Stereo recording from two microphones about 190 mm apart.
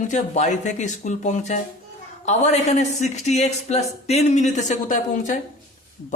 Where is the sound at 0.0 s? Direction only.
40° left (ahead or behind).